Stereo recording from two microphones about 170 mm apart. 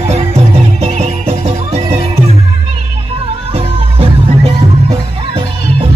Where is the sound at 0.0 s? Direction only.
40° right (ahead or behind).